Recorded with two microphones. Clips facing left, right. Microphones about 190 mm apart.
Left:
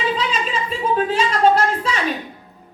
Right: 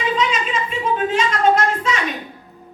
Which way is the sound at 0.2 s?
35° left (ahead or behind).